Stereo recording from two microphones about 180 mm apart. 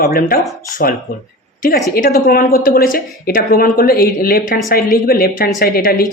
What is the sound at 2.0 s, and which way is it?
Speech, 55° left (ahead or behind).